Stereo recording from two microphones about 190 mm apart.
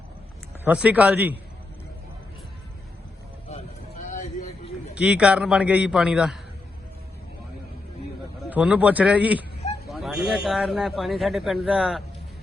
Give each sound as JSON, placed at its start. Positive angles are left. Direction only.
{"t": 0.6, "sound": "a man's voice", "side_deg": -10}
{"t": 4.1, "sound": "a sound", "side_deg": 40}
{"t": 4.9, "sound": "a man's voice", "side_deg": -5}
{"t": 8.4, "sound": "a man's voice", "side_deg": -5}